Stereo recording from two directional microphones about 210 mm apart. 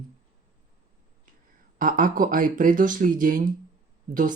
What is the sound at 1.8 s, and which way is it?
Speech, 40° right (ahead or behind).